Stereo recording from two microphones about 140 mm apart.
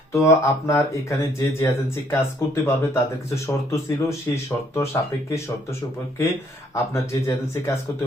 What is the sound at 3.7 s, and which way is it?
Speech, 20° left (ahead or behind).